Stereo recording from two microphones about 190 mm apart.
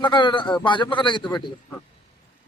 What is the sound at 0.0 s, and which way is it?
A man's voice, 25° left (ahead or behind).